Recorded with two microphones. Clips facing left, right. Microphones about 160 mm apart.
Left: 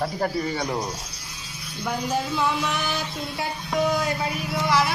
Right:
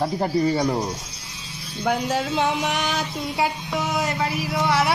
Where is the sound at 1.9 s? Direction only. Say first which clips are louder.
Right 3 dB; 75° right (ahead or behind).